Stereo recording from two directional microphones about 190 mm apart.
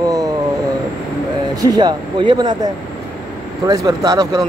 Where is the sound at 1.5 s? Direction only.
20° right (ahead or behind).